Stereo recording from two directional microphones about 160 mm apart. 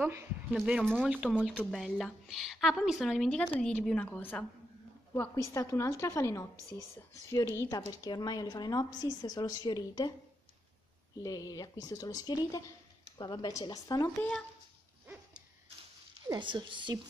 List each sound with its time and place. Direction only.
0.0 s speech: 15° right (ahead or behind)
0.5 s a woman's voice: 5° right (ahead or behind); by 6.4 s 20° left (ahead or behind)
7.5 s a woman's voice: 25° left (ahead or behind)
11.1 s a woman's voice: 25° left (ahead or behind)
16.3 s speech: 30° right (ahead or behind)